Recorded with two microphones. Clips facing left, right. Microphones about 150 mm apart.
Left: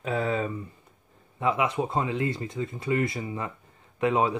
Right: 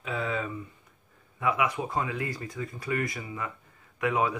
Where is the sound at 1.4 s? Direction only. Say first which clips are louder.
Left 2 dB; 25° left (ahead or behind).